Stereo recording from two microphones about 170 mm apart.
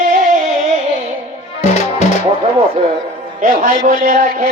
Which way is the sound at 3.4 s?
50° right (ahead or behind).